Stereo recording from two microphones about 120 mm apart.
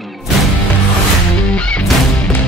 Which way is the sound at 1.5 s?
10° left (ahead or behind).